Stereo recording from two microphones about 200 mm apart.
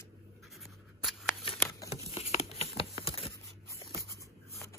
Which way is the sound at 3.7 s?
15° left (ahead or behind).